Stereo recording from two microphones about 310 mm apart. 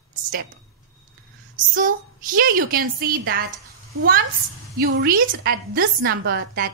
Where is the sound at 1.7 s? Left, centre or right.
Right.